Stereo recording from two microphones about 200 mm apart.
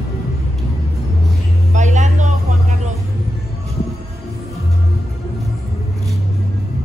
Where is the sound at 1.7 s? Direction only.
35° right (ahead or behind).